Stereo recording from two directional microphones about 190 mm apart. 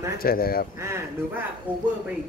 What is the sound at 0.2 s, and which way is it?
Speech, 50° left (ahead or behind).